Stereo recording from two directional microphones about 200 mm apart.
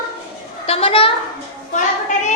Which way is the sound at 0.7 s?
30° left (ahead or behind).